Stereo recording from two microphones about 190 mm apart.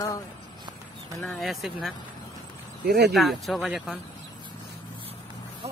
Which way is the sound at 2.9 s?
55° right (ahead or behind).